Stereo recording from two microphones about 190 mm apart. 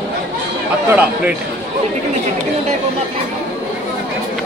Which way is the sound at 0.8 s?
5° right (ahead or behind).